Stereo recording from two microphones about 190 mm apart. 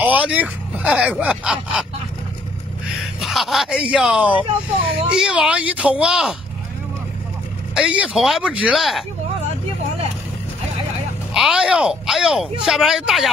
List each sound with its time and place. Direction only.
0.0 s speech: 5° right (ahead or behind)
3.2 s speech: centre (ahead or behind)
4.8 s speech: 25° right (ahead or behind)
5.1 s speech: 5° right (ahead or behind)
7.7 s speech: 5° right (ahead or behind)
11.3 s speech: 5° right (ahead or behind)